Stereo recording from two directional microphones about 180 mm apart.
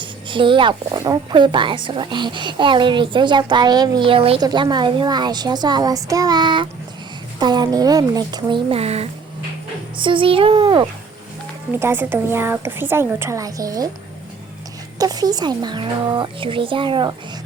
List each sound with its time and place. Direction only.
0.0 s speech: 25° right (ahead or behind)
11.7 s a woman's voice: 10° right (ahead or behind)
14.9 s speech: 20° right (ahead or behind)